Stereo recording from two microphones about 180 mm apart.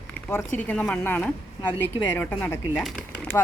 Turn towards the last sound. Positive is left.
turn(degrees=5)  # may be behind; listen again after turning